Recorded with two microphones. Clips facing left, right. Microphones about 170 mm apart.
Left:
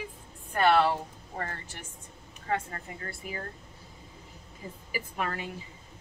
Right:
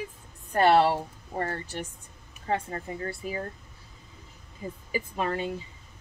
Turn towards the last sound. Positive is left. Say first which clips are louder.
# right 5 dB
turn(degrees=-25)  # may be behind; listen again after turning